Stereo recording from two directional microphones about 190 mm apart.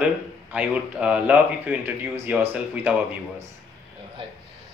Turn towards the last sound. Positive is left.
turn(degrees=-10)  # may be behind; listen again after turning